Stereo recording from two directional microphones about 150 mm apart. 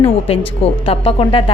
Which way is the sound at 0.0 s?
40° left (ahead or behind).